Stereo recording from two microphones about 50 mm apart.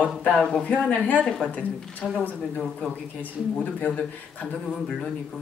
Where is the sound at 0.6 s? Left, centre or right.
Left.